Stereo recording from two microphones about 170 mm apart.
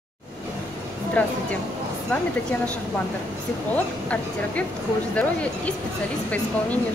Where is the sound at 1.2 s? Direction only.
10° left (ahead or behind).